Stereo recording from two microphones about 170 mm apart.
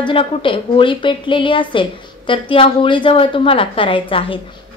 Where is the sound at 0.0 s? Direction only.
30° left (ahead or behind).